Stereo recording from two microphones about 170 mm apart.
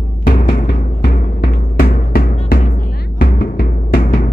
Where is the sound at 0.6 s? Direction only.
65° left (ahead or behind).